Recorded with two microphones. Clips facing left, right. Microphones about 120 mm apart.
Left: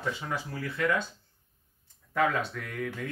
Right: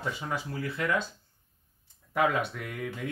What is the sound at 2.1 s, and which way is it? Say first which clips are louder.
Speech: right 1 dB; 15° right (ahead or behind).